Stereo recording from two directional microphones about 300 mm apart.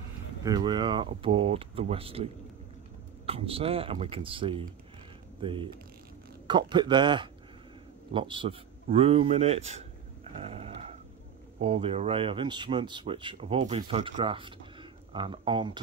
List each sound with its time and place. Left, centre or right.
0.4 s speech: centre
3.3 s speech: centre
10.3 s a sound: centre
11.6 s speech: centre